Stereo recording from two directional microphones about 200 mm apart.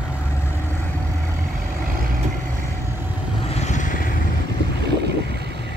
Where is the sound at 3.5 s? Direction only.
35° left (ahead or behind).